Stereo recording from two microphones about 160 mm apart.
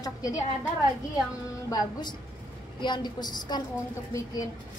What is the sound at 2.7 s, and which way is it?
Speech, 30° left (ahead or behind).